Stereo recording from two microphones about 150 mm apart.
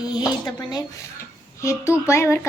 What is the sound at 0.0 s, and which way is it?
Speech, 30° left (ahead or behind).